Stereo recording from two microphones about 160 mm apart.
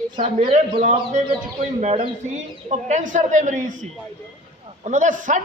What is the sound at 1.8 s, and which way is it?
Speech, 35° right (ahead or behind).